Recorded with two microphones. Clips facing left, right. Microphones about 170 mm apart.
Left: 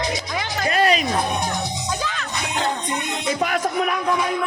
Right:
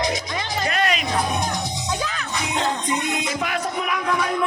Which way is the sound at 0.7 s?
35° left (ahead or behind).